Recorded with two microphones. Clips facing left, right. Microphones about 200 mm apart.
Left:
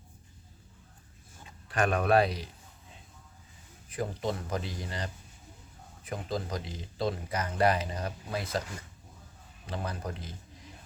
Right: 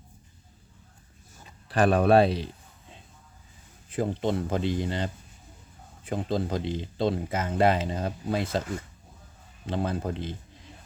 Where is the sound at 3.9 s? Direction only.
25° right (ahead or behind).